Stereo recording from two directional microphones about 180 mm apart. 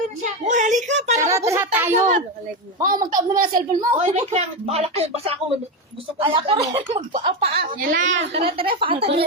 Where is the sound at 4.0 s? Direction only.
40° right (ahead or behind).